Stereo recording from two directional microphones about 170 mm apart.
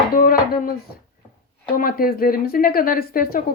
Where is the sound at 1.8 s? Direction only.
60° left (ahead or behind).